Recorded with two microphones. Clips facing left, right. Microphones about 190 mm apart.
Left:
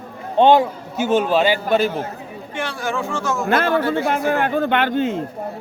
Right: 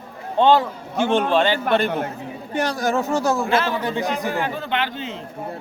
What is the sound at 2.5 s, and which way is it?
Speech, 40° right (ahead or behind).